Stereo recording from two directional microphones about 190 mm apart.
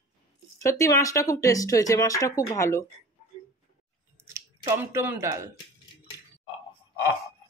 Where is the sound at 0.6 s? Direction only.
15° left (ahead or behind).